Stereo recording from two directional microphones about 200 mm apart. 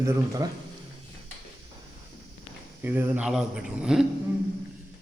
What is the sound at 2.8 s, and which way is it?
A man's voice, 10° right (ahead or behind).